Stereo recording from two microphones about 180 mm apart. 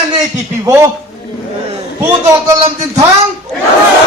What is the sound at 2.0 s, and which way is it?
Speech, 15° right (ahead or behind).